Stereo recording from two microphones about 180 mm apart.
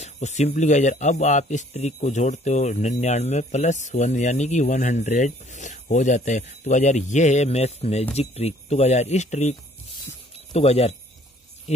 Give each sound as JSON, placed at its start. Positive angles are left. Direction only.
{"t": 0.0, "sound": "speech", "side_deg": 40}